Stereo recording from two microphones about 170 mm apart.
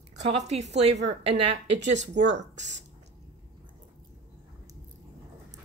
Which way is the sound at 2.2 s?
90° right.